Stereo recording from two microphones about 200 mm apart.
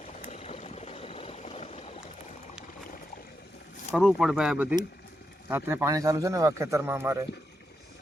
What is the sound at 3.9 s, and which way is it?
A man's voice, centre (ahead or behind).